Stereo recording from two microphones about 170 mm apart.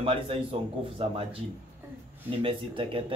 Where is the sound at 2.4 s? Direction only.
30° right (ahead or behind).